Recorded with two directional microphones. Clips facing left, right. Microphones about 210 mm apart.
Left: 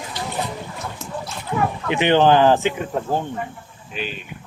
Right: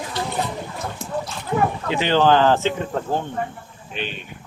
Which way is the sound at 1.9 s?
20° left (ahead or behind).